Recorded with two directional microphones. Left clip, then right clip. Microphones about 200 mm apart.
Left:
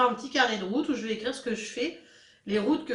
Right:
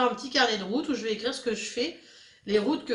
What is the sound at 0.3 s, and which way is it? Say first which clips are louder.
Speech: right 3 dB; 50° right (ahead or behind).